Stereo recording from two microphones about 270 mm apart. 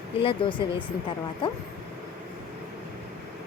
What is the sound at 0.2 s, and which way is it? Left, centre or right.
Speech, centre.